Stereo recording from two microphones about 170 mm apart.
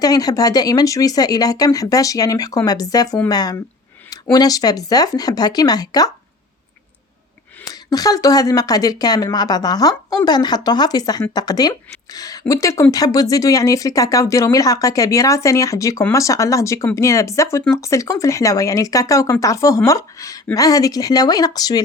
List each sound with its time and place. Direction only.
0.0 s speech: 20° left (ahead or behind)
7.6 s speech: 20° left (ahead or behind)